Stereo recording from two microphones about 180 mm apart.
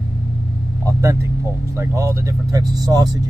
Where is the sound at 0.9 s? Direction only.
15° right (ahead or behind).